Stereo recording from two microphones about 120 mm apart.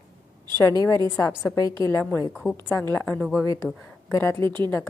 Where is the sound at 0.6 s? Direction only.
30° left (ahead or behind).